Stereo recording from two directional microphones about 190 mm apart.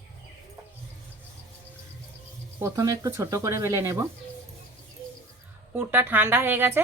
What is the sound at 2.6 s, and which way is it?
Speech, 15° right (ahead or behind).